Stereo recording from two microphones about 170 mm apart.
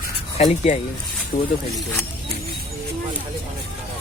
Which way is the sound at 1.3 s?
60° left (ahead or behind).